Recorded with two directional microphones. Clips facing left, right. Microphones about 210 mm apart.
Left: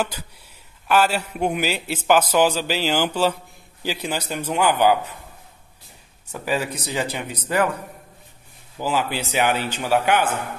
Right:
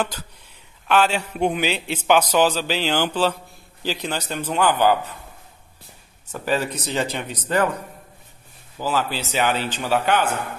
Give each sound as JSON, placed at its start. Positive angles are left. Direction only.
{"t": 0.8, "sound": "a man's voice", "side_deg": 5}
{"t": 6.4, "sound": "a man's voice", "side_deg": 10}
{"t": 8.7, "sound": "a man's voice", "side_deg": 15}